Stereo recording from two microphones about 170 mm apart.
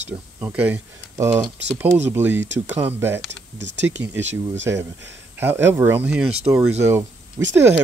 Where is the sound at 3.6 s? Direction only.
90° right.